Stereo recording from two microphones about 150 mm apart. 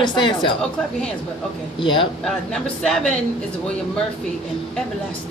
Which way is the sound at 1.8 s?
35° left (ahead or behind).